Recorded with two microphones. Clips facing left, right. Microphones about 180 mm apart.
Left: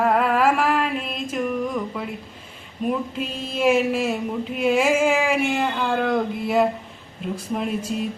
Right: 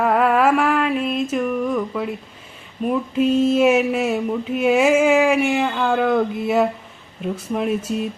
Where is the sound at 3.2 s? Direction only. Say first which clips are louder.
Right 13 dB; 50° right (ahead or behind).